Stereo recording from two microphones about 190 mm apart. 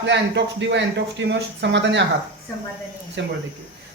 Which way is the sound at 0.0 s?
65° right (ahead or behind).